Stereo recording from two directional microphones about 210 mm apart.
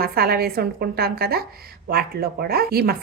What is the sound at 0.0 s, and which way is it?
A woman's voice, 45° right (ahead or behind).